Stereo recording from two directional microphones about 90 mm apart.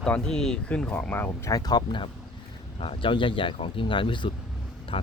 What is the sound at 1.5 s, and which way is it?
Speech, 50° left (ahead or behind).